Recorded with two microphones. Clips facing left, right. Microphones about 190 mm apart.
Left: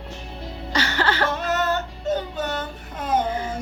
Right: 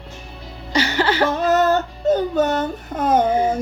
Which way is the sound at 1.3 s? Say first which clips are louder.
Right 7 dB; 35° right (ahead or behind).